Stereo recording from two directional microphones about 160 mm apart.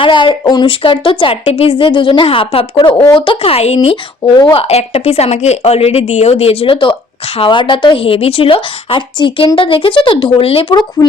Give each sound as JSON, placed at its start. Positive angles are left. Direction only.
{"t": 0.0, "sound": "speech", "side_deg": 30}
{"t": 4.7, "sound": "speech", "side_deg": 40}